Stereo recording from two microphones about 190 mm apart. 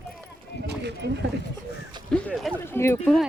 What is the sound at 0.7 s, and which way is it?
Speech, 60° right (ahead or behind).